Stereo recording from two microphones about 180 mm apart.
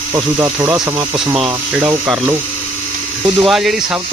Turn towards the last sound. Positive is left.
turn(degrees=0)  # may be behind; listen again after turning